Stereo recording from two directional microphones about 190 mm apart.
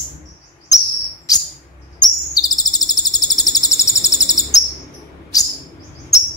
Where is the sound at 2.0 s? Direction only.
20° left (ahead or behind).